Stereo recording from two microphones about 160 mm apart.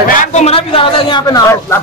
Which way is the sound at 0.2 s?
45° left (ahead or behind).